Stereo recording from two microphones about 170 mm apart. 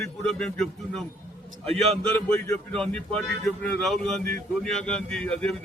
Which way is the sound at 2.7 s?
5° left (ahead or behind).